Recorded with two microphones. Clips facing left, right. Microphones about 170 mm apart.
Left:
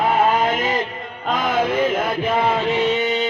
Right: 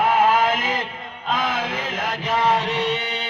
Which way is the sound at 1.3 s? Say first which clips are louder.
Left 7 dB; 50° left (ahead or behind).